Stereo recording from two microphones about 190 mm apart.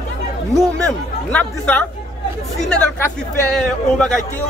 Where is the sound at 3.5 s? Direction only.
5° left (ahead or behind).